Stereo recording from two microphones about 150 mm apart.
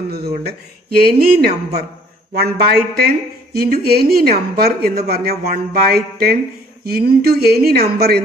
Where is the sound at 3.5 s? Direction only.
90° right.